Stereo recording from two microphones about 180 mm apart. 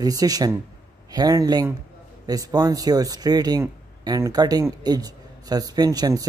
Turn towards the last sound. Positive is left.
turn(degrees=-20)  # may be behind; listen again after turning